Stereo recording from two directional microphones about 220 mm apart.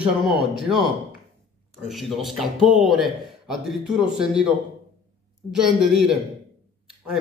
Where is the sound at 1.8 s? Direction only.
Centre (ahead or behind).